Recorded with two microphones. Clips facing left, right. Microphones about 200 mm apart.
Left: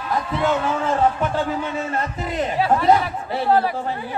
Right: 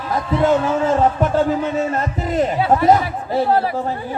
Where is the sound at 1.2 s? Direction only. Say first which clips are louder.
Right 6 dB; 40° right (ahead or behind).